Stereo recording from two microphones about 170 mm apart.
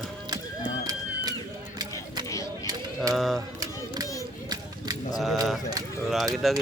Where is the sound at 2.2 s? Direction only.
20° left (ahead or behind).